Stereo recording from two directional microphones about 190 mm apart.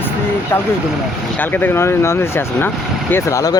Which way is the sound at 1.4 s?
10° left (ahead or behind).